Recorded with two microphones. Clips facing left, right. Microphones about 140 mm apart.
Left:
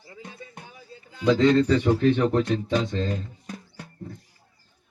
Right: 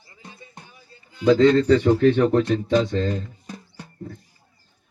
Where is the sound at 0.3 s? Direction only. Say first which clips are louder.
Right 2 dB; 5° left (ahead or behind).